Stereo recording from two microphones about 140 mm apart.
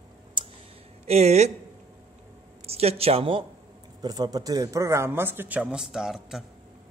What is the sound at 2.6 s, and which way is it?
Speech, 45° right (ahead or behind).